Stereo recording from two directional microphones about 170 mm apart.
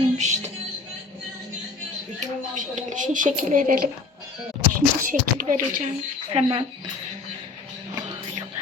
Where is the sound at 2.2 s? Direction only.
45° right (ahead or behind).